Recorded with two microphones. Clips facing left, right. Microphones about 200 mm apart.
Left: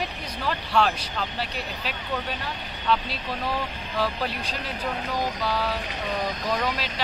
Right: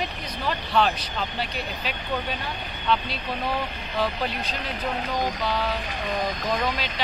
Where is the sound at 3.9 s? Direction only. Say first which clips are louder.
Right 1 dB; 5° left (ahead or behind).